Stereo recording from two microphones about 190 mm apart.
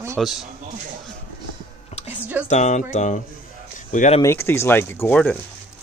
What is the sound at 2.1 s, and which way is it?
Speech, 10° right (ahead or behind).